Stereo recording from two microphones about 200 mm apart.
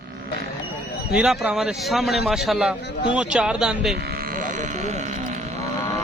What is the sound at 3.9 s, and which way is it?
Sheep, 45° right (ahead or behind).